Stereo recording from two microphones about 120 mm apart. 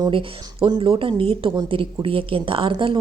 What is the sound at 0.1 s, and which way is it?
A woman's voice, 45° right (ahead or behind).